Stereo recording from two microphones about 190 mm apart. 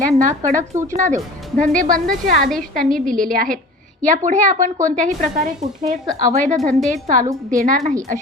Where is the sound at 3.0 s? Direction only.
45° right (ahead or behind).